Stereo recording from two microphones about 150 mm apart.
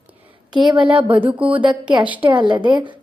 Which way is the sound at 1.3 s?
10° right (ahead or behind).